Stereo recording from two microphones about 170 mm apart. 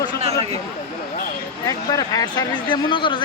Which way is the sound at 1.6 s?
20° left (ahead or behind).